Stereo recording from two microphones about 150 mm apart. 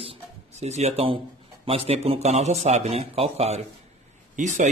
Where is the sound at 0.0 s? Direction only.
45° right (ahead or behind).